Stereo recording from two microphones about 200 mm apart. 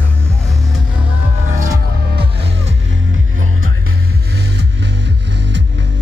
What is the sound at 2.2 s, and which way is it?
Music, 60° right (ahead or behind).